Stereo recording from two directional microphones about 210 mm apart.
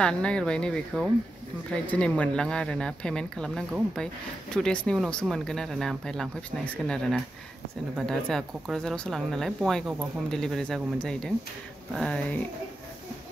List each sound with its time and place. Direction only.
0.0 s speech: 5° left (ahead or behind)